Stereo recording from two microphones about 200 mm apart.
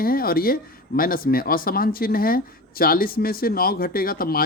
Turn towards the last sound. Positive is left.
turn(degrees=45)  # may be behind; listen again after turning